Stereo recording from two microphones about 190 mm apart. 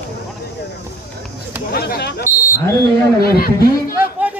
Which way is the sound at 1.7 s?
55° left (ahead or behind).